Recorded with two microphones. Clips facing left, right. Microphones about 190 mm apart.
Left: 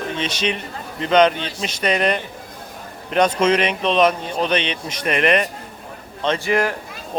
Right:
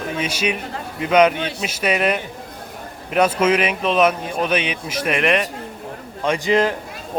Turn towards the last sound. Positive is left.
turn(degrees=-20)  # may be behind; listen again after turning